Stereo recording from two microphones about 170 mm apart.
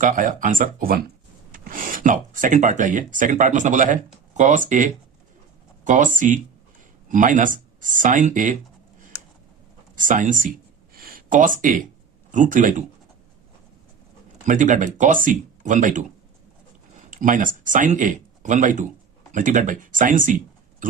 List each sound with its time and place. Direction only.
0.0 s speech: 50° right (ahead or behind)
10.0 s speech: 50° right (ahead or behind)
10.9 s a sound: 60° right (ahead or behind)
12.3 s speech: 50° right (ahead or behind)
14.4 s speech: 50° right (ahead or behind)
17.1 s speech: 50° right (ahead or behind)